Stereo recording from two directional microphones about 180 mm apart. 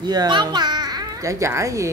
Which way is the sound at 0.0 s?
25° right (ahead or behind).